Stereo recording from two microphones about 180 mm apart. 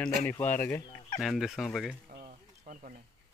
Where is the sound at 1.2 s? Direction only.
Centre (ahead or behind).